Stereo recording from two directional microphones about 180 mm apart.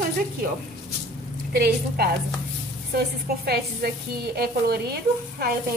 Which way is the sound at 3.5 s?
60° right (ahead or behind).